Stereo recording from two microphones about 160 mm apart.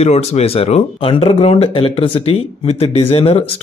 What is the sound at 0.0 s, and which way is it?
A man's voice, 40° left (ahead or behind).